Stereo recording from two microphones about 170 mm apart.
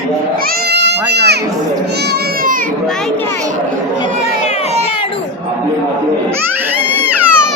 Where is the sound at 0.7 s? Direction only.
85° right.